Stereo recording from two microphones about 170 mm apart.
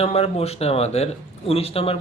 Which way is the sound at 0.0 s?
35° left (ahead or behind).